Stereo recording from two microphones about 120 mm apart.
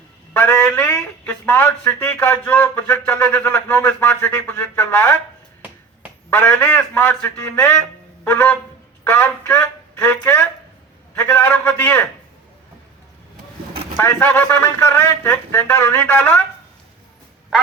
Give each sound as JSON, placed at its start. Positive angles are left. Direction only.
{"t": 0.3, "sound": "speech", "side_deg": 20}
{"t": 6.3, "sound": "speech", "side_deg": 15}
{"t": 13.9, "sound": "speech", "side_deg": 20}